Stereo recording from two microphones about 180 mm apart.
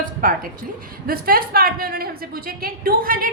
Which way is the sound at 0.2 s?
50° right (ahead or behind).